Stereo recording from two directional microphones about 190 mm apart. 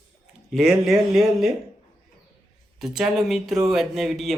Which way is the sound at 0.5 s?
Centre (ahead or behind).